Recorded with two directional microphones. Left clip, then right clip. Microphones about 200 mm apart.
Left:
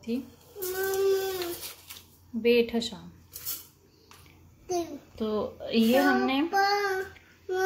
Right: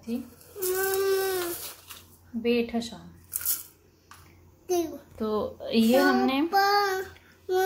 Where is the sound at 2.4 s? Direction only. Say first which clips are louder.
Left 3 dB; 15° left (ahead or behind).